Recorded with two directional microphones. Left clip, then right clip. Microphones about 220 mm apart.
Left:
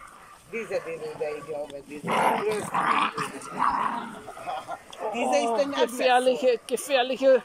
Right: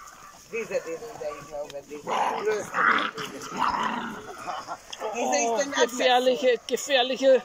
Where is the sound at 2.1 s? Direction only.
30° left (ahead or behind).